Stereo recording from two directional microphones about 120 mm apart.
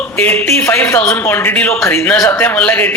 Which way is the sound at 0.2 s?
15° left (ahead or behind).